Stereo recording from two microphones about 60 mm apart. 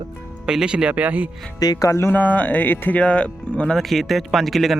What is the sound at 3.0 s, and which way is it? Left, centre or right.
Speech, centre.